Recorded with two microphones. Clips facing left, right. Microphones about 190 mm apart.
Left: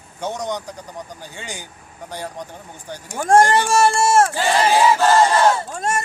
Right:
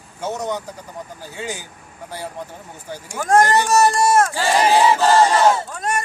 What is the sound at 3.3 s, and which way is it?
Speech, 30° left (ahead or behind).